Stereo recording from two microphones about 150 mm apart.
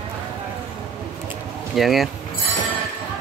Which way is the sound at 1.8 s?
Centre (ahead or behind).